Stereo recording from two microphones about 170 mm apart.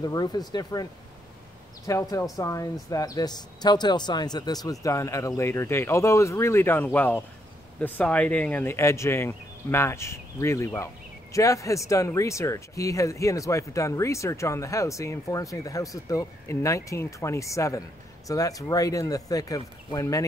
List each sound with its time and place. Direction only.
0.0 s speech: 20° left (ahead or behind)
1.9 s speech: 20° left (ahead or behind)